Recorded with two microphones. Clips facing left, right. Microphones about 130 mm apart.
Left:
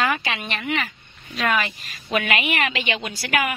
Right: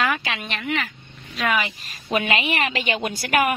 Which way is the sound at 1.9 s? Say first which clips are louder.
Right 1 dB; 30° right (ahead or behind).